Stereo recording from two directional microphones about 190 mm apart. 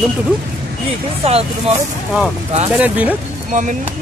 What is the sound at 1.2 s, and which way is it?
Speech, 30° right (ahead or behind).